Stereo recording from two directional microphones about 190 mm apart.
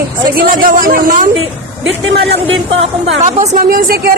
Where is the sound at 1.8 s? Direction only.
75° right (ahead or behind).